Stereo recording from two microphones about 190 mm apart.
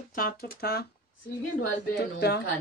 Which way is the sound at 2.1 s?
60° left (ahead or behind).